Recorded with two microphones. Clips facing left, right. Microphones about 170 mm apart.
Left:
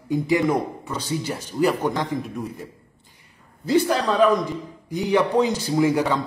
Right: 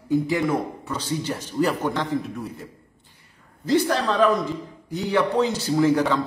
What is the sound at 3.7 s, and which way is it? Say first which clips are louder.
A man's voice: left 1 dB; 10° left (ahead or behind).